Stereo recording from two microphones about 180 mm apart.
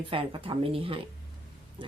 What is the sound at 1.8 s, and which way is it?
Oink, 30° right (ahead or behind).